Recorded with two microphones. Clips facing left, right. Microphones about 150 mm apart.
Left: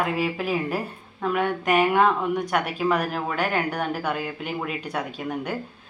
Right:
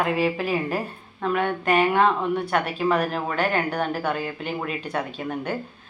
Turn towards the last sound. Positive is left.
turn(degrees=10)  # may be behind; listen again after turning